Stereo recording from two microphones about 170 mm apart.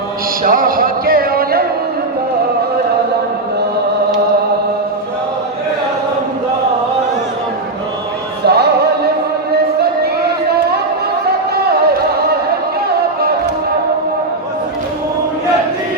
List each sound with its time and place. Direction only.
0.4 s music: 55° right (ahead or behind)
8.4 s music: 70° right (ahead or behind)